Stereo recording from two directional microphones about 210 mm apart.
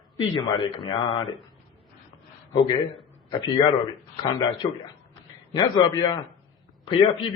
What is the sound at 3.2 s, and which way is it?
A man's voice, 20° left (ahead or behind).